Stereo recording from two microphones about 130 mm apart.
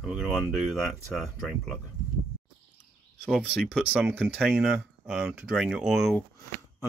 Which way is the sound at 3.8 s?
15° right (ahead or behind).